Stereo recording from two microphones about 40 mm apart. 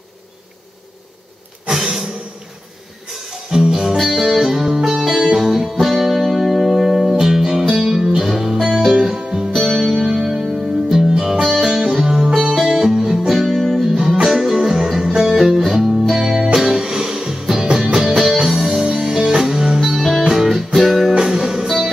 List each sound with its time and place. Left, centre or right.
3.3 s music: centre
3.9 s music: centre
4.4 s music: centre
9.5 s music: centre
9.8 s music: centre
13.3 s music: centre
14.2 s music: centre
21.1 s music: centre